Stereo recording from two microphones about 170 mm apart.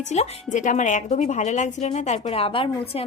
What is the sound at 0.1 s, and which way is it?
A woman's voice, 45° left (ahead or behind).